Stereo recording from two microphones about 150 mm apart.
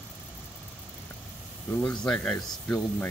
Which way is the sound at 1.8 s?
5° left (ahead or behind).